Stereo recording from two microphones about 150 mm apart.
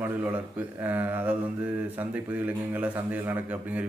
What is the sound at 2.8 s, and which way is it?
Speech, 10° right (ahead or behind).